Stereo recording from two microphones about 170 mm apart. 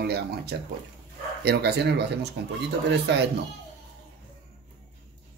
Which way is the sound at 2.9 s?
90° right.